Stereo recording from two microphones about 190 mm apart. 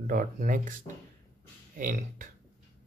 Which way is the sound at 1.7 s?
45° right (ahead or behind).